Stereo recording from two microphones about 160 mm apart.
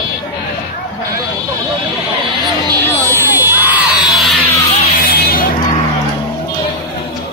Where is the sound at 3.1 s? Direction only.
15° right (ahead or behind).